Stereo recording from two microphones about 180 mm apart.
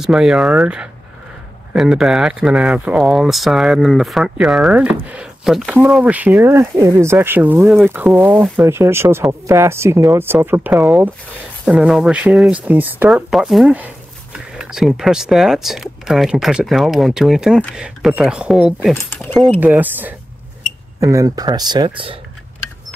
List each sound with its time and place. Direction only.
0.0 s speech: 5° right (ahead or behind)
19.6 s speech: 10° right (ahead or behind); by 22.2 s 30° right (ahead or behind)